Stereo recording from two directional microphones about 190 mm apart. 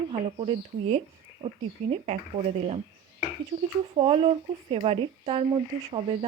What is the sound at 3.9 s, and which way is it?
Speech, 30° right (ahead or behind).